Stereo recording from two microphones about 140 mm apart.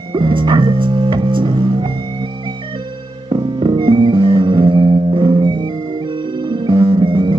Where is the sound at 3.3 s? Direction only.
35° right (ahead or behind).